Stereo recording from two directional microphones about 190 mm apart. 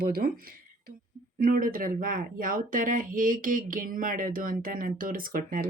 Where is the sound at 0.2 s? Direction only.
50° right (ahead or behind).